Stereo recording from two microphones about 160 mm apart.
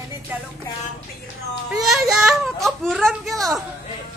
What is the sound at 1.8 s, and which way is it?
A child's voice, centre (ahead or behind).